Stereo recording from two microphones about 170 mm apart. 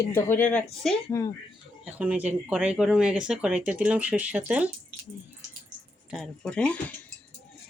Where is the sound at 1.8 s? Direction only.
10° right (ahead or behind).